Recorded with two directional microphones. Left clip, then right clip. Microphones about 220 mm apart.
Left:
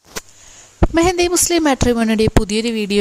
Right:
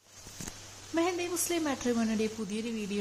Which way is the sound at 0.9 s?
45° left (ahead or behind).